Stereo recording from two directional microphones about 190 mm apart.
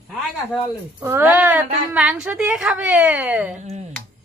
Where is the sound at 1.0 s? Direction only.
10° right (ahead or behind).